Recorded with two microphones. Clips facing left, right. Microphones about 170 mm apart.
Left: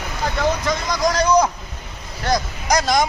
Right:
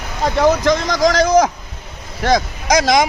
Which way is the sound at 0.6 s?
90° right.